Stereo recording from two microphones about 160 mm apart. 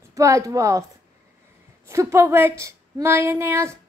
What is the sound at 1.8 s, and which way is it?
A woman's voice, 15° right (ahead or behind).